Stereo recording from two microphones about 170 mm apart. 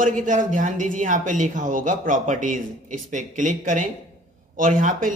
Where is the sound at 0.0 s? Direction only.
50° right (ahead or behind).